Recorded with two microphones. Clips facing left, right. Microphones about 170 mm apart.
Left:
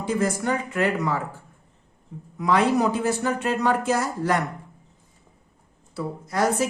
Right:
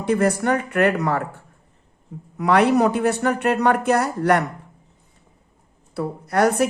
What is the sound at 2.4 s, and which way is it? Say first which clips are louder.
Speech: right 4 dB; 65° right (ahead or behind).